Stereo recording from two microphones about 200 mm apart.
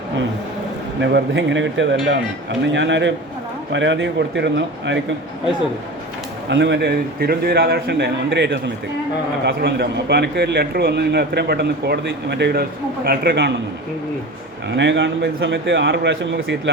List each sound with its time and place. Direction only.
1.0 s a man's voice: 65° right (ahead or behind)
6.5 s a man's voice: 60° right (ahead or behind)
14.8 s a man's voice: 65° right (ahead or behind)